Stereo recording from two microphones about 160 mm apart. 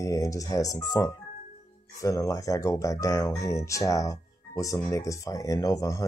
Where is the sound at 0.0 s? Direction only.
20° left (ahead or behind).